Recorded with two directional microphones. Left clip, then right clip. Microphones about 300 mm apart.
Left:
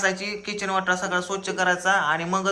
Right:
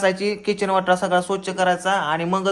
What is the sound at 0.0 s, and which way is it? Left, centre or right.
Speech, centre.